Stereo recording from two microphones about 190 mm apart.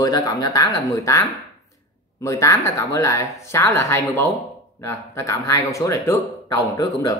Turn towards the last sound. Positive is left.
turn(degrees=15)  # may be behind; listen again after turning